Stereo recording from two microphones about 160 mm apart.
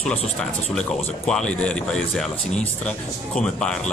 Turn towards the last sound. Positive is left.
turn(degrees=5)  # may be behind; listen again after turning